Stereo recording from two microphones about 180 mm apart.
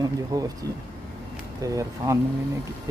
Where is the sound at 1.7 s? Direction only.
15° right (ahead or behind).